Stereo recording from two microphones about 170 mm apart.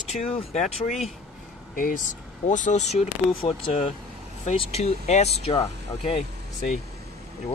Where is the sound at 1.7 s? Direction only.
55° left (ahead or behind).